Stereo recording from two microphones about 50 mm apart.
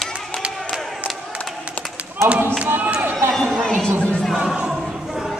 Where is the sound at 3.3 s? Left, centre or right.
Centre.